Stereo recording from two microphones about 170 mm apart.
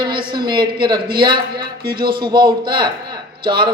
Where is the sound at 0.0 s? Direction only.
25° right (ahead or behind).